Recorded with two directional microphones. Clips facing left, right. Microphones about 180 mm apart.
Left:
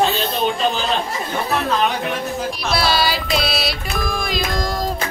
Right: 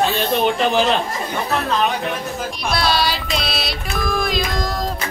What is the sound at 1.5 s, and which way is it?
Music, centre (ahead or behind).